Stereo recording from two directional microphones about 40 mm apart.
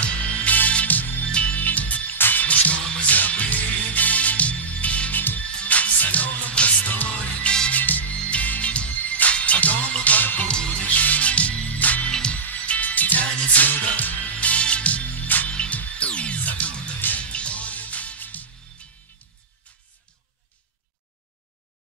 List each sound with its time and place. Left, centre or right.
0.0 s music: left
1.2 s music: left
2.1 s music: left
2.4 s music: left
5.1 s music: left
7.7 s music: left
8.1 s music: left
10.4 s music: left
11.0 s music: left
12.1 s music: left
12.4 s music: left